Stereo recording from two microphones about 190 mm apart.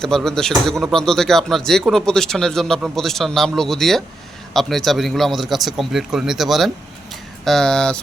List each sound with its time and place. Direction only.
0.0 s speech: centre (ahead or behind)